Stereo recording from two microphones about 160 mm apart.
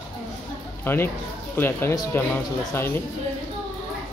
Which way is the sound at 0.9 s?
15° left (ahead or behind).